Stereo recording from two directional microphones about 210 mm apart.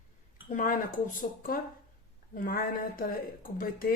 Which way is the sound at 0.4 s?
35° left (ahead or behind).